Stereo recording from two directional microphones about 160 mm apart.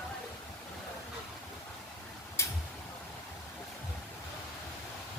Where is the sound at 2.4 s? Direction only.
15° left (ahead or behind).